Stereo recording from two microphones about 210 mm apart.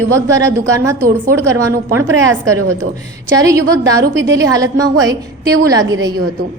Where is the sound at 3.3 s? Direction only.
15° right (ahead or behind).